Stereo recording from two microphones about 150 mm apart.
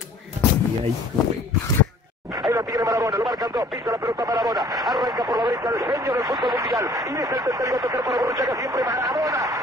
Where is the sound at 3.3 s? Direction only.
25° right (ahead or behind).